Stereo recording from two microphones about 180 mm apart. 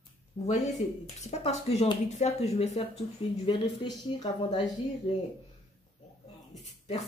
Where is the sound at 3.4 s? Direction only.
25° left (ahead or behind).